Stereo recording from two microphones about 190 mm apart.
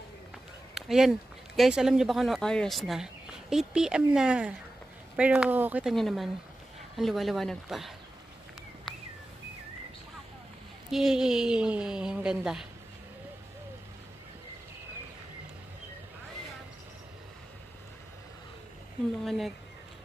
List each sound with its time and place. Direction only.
0.7 s a sound: centre (ahead or behind)
1.6 s speech: 5° right (ahead or behind)
10.9 s speech: centre (ahead or behind)
19.2 s speech: centre (ahead or behind)